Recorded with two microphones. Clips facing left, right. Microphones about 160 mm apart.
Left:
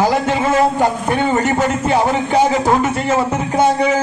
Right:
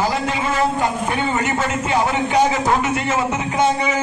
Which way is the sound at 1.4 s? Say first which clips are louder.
Left 5 dB; 40° left (ahead or behind).